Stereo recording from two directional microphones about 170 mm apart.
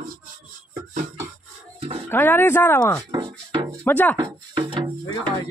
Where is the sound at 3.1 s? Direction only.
25° right (ahead or behind).